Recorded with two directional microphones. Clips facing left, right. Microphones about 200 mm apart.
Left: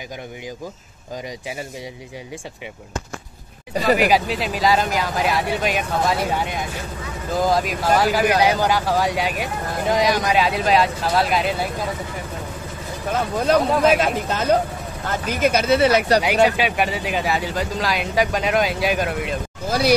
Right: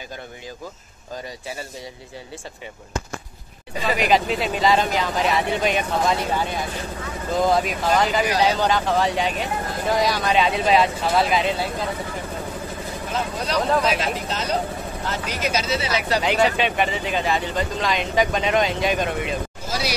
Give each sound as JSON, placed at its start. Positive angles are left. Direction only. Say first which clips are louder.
{"t": 4.0, "sound": "speech", "louder": "left 1 dB", "side_deg": 5}
{"t": 7.3, "sound": "speech", "louder": "even", "side_deg": 0}
{"t": 10.3, "sound": "speech", "louder": "even", "side_deg": 0}
{"t": 13.1, "sound": "speech", "louder": "left 7 dB", "side_deg": 50}
{"t": 16.4, "sound": "speech", "louder": "left 1 dB", "side_deg": 10}
{"t": 19.7, "sound": "hubbub", "louder": "left 10 dB", "side_deg": 55}